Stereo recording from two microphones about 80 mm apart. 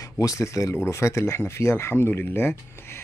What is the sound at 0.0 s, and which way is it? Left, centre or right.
Speech, left.